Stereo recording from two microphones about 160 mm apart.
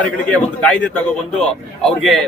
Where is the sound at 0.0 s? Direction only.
5° left (ahead or behind).